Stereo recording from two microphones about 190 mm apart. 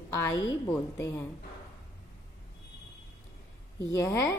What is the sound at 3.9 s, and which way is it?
Speech, 15° left (ahead or behind).